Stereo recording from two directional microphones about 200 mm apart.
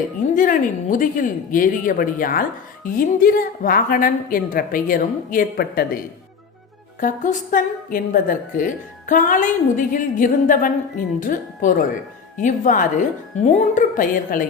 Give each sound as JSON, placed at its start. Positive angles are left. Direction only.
{"t": 0.3, "sound": "a woman's voice", "side_deg": 40}
{"t": 7.0, "sound": "a woman's voice", "side_deg": 40}